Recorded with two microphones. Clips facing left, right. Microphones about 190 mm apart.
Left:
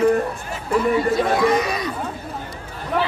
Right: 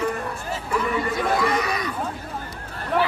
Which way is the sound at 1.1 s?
25° left (ahead or behind).